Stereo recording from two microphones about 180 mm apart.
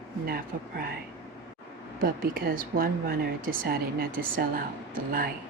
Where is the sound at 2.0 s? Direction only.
55° right (ahead or behind).